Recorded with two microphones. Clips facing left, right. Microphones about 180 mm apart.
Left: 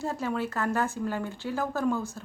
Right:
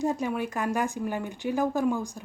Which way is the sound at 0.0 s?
15° right (ahead or behind).